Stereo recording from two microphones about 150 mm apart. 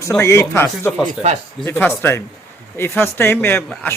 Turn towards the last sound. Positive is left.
turn(degrees=15)  # may be behind; listen again after turning